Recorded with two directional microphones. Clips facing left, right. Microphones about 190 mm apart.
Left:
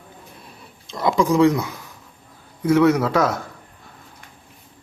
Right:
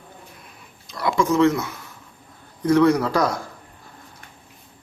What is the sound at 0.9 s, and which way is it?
A man's voice, 20° left (ahead or behind).